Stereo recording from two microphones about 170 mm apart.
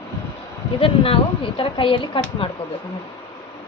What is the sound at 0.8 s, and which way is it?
Speech, 35° left (ahead or behind).